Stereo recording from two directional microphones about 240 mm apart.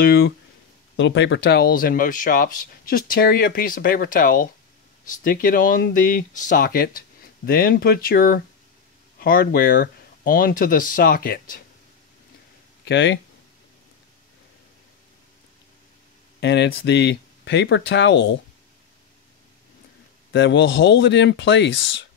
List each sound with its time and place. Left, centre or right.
0.0 s speech: left
12.8 s speech: left
16.3 s speech: left
20.3 s speech: left